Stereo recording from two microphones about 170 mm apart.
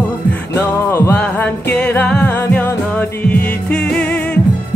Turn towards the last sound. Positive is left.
turn(degrees=10)  # may be behind; listen again after turning